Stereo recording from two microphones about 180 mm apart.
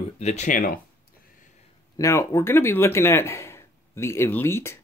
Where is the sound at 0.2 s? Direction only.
40° left (ahead or behind).